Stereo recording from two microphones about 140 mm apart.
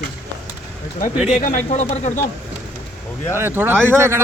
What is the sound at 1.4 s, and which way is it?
Speech, 65° left (ahead or behind).